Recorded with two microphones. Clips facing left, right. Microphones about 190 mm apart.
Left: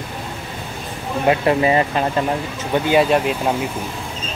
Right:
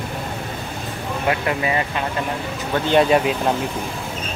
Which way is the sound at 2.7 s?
5° left (ahead or behind).